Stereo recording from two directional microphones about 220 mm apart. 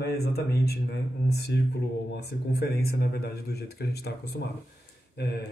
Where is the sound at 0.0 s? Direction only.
45° left (ahead or behind).